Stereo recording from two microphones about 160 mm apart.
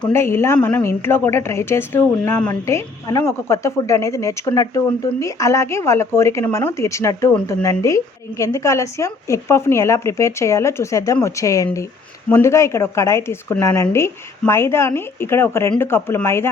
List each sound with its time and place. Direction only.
0.1 s a woman's voice: 15° left (ahead or behind)